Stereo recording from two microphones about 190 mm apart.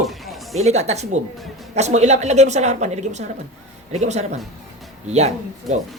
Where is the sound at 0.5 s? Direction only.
35° right (ahead or behind).